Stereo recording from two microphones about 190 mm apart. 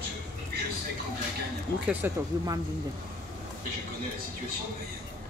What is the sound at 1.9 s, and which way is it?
Speech, 15° right (ahead or behind).